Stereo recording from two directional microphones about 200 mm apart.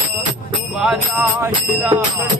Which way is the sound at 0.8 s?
5° right (ahead or behind).